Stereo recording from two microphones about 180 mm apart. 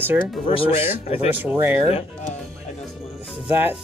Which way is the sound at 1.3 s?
10° right (ahead or behind).